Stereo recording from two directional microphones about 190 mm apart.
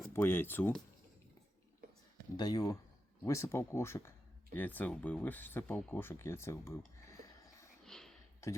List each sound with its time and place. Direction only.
0.1 s speech: 10° left (ahead or behind)
2.3 s speech: 20° left (ahead or behind)
7.9 s sniff: centre (ahead or behind)